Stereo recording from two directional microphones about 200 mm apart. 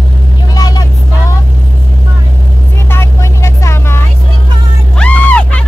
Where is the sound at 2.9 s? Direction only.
15° left (ahead or behind).